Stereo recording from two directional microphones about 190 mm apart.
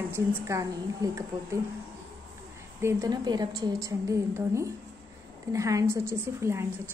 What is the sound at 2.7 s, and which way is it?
A woman's voice, 15° right (ahead or behind).